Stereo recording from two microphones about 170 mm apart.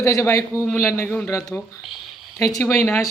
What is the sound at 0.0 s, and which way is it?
A woman's voice, 15° left (ahead or behind).